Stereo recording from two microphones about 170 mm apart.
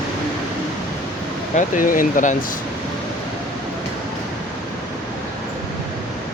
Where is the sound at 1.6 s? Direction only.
50° left (ahead or behind).